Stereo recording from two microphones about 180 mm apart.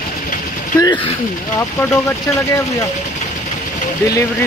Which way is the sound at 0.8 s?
25° left (ahead or behind).